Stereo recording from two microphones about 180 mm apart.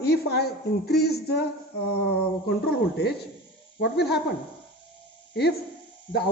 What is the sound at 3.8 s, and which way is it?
Speech, 65° left (ahead or behind).